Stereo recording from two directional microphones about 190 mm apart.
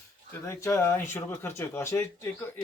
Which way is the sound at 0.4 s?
15° left (ahead or behind).